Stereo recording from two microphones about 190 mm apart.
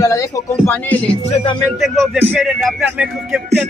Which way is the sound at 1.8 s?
Centre (ahead or behind).